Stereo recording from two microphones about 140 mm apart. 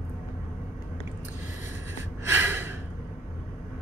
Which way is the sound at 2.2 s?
15° right (ahead or behind).